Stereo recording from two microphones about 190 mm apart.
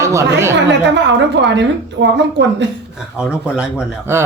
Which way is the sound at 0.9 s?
65° right (ahead or behind).